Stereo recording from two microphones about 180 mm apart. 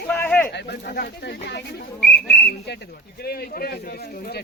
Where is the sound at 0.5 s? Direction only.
65° left (ahead or behind).